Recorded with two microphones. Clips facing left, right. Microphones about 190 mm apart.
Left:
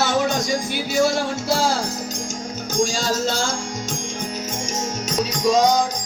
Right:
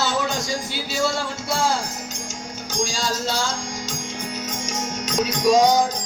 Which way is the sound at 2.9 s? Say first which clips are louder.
Left 3 dB; 45° left (ahead or behind).